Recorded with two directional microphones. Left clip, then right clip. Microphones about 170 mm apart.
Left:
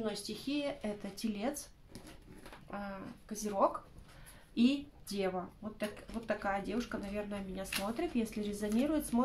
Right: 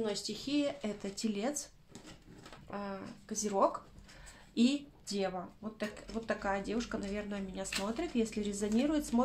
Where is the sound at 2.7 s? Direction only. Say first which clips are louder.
Right 2 dB; 30° right (ahead or behind).